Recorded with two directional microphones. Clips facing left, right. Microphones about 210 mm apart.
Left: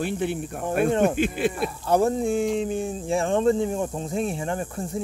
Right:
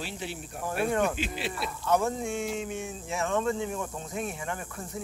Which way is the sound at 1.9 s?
35° left (ahead or behind).